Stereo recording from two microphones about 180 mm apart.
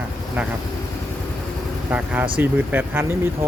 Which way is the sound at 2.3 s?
10° right (ahead or behind).